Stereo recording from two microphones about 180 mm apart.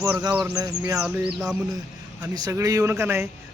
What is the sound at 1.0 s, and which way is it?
Bird, 5° right (ahead or behind).